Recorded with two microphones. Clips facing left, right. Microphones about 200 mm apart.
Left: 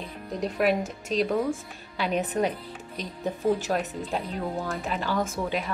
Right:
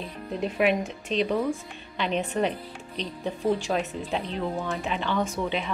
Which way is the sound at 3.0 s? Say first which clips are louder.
Even; 45° left (ahead or behind).